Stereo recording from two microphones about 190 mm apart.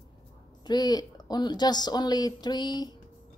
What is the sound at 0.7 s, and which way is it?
Speech, 20° left (ahead or behind).